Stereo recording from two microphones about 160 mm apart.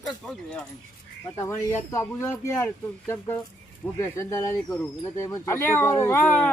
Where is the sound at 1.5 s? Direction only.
15° left (ahead or behind).